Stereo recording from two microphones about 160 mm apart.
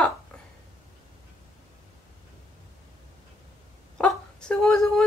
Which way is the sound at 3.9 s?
5° left (ahead or behind).